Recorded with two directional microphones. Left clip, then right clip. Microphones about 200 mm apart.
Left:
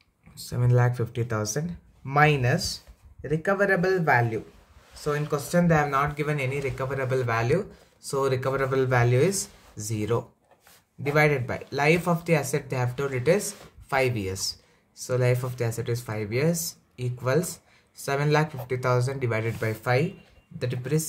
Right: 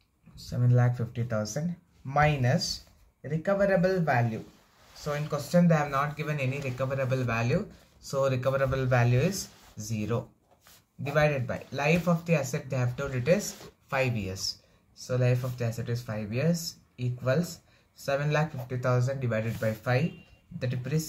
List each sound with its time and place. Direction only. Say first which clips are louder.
0.5 s speech: left 4 dB; 60° left (ahead or behind)
11.2 s speech: left 4 dB; 50° left (ahead or behind)